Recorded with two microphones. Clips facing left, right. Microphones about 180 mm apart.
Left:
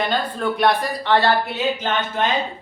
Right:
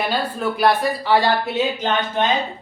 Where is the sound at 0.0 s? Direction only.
10° right (ahead or behind).